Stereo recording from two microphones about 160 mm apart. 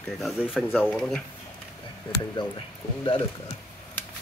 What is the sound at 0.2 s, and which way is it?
Speech, 5° right (ahead or behind).